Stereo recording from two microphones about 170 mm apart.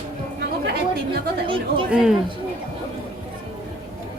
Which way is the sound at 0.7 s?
65° right (ahead or behind).